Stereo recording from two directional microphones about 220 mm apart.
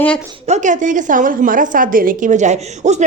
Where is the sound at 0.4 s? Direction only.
35° right (ahead or behind).